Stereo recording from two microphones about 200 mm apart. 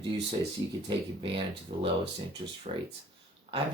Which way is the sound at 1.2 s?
25° right (ahead or behind).